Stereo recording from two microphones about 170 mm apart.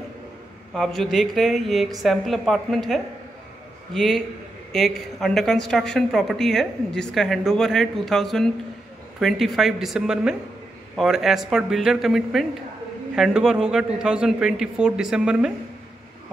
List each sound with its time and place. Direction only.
0.7 s a woman's voice: centre (ahead or behind)